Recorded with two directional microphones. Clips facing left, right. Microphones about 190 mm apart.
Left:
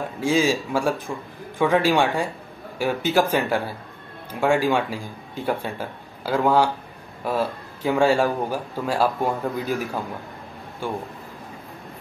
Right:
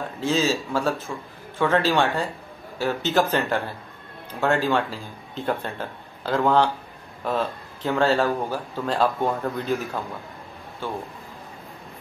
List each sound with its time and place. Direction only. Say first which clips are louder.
0.2 s a man's voice: left 2 dB; 10° left (ahead or behind)